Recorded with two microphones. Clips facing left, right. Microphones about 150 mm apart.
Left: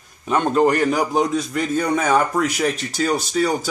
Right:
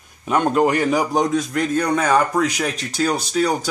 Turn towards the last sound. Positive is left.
turn(degrees=5)  # may be behind; listen again after turning